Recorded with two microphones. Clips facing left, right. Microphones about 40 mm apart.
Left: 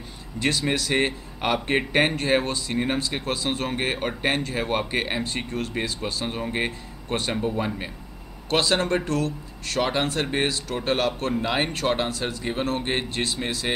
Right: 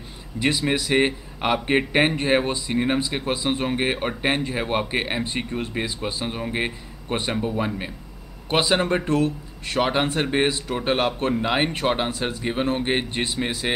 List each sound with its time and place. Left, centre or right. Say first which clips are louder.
0.4 s a man's voice: right 2 dB; centre
6.2 s a man's voice: even; centre